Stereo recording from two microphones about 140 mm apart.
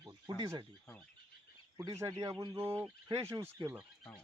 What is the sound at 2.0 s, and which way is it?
A man's voice, 25° right (ahead or behind).